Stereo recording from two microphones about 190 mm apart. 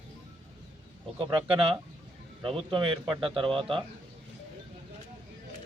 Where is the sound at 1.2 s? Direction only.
30° right (ahead or behind).